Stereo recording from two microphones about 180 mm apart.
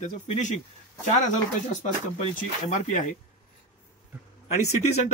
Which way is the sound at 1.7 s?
40° left (ahead or behind).